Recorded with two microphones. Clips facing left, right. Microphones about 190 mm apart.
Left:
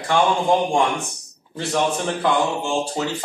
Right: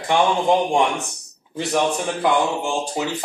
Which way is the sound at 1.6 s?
15° right (ahead or behind).